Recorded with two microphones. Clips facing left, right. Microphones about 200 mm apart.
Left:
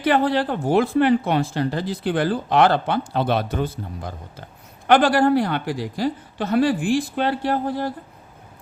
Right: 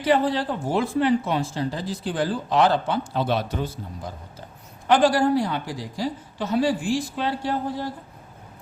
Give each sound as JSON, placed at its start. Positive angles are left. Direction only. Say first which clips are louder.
{"t": 0.0, "sound": "speech", "louder": "left 2 dB", "side_deg": 65}